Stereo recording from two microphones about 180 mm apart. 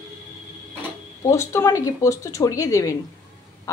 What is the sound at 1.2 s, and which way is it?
A woman's voice, 15° left (ahead or behind).